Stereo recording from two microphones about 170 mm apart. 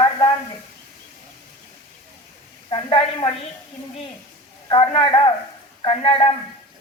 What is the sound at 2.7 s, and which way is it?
Speech, 30° left (ahead or behind).